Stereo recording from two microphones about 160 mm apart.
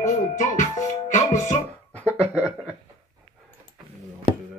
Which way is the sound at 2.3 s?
10° right (ahead or behind).